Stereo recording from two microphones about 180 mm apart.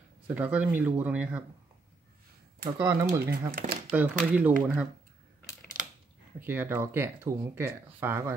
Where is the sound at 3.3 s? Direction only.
60° right (ahead or behind).